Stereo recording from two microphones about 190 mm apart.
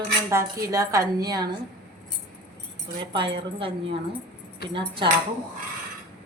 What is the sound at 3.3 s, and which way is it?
Speech, 30° right (ahead or behind).